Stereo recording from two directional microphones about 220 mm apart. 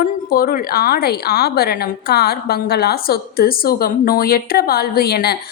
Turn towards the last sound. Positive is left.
turn(degrees=45)  # may be behind; listen again after turning